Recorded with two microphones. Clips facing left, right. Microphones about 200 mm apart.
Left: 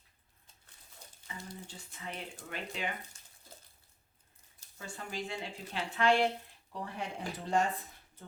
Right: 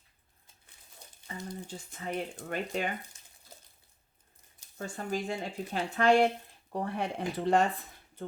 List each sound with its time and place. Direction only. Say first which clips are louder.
1.3 s speech: right 6 dB; 45° right (ahead or behind)
4.8 s speech: right 7 dB; 45° right (ahead or behind)
6.7 s speech: right 7 dB; 55° right (ahead or behind)